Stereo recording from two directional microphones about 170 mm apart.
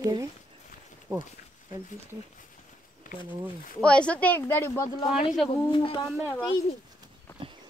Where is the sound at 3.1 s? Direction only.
50° left (ahead or behind).